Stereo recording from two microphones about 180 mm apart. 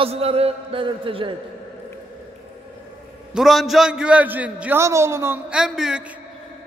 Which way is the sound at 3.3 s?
Centre (ahead or behind).